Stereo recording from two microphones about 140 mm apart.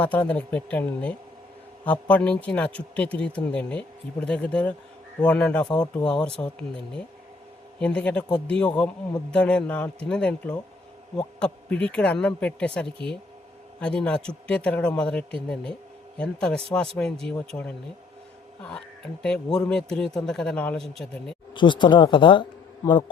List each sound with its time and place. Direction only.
0.0 s speech: 10° left (ahead or behind)
19.2 s speech: 5° left (ahead or behind)
21.5 s speech: 35° left (ahead or behind)